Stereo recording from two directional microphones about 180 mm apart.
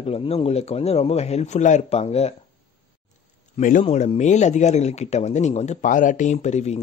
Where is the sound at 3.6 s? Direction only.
45° left (ahead or behind).